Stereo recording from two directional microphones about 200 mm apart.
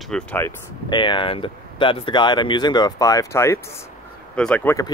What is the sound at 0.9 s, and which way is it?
Speech, 25° left (ahead or behind).